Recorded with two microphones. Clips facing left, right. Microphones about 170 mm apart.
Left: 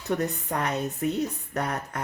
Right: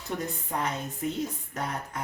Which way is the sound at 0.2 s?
70° left (ahead or behind).